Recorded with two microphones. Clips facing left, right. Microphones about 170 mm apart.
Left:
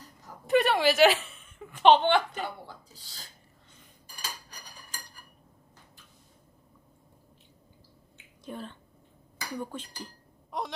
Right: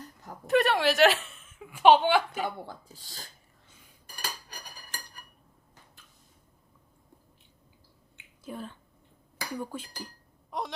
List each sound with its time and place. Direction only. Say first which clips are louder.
0.4 s a woman's voice: left 1 dB; centre (ahead or behind)
2.6 s speech: right 4 dB; 50° right (ahead or behind)
4.0 s cutlery: right 2 dB; 65° right (ahead or behind)
8.4 s a woman's voice: even; 5° right (ahead or behind)
10.5 s wail: even; centre (ahead or behind)